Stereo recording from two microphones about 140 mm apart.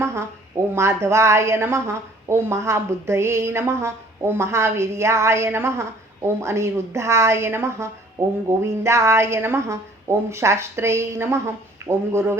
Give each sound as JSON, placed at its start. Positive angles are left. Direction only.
{"t": 0.0, "sound": "a woman's voice", "side_deg": -20}